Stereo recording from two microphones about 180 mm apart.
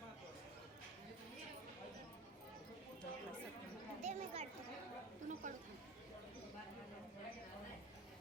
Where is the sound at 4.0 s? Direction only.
35° right (ahead or behind).